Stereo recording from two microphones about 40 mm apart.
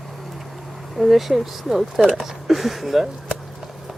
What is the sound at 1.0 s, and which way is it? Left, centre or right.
Speech, centre.